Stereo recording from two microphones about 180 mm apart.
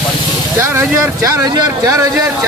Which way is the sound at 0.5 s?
15° right (ahead or behind).